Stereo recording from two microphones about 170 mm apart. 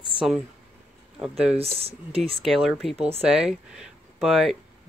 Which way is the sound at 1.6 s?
35° right (ahead or behind).